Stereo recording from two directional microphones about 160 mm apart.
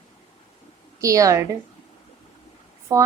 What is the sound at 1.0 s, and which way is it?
Speech, 20° right (ahead or behind).